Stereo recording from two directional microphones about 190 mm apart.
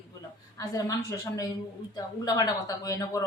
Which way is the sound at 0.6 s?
20° left (ahead or behind).